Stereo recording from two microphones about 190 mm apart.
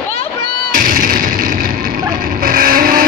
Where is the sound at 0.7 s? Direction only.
50° right (ahead or behind).